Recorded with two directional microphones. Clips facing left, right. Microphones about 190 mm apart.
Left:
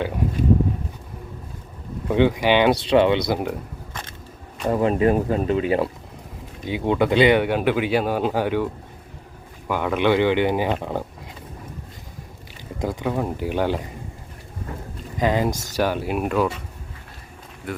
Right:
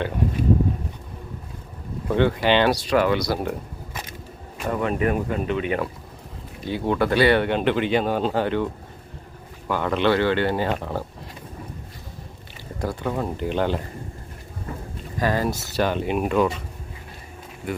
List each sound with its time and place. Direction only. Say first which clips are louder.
2.0 s speech: left 2 dB; 15° left (ahead or behind)
2.9 s speech: left 3 dB; 25° left (ahead or behind)
4.6 s speech: left 4 dB; 30° left (ahead or behind)
6.7 s speech: left 2 dB; 15° left (ahead or behind)
12.8 s speech: left 2 dB; 15° left (ahead or behind)
15.2 s speech: left 2 dB; 20° left (ahead or behind); by 16.5 s 5° left (ahead or behind)
17.7 s speech: right 2 dB; centre (ahead or behind)